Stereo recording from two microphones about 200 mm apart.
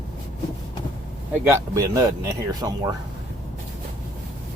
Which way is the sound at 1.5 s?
15° right (ahead or behind).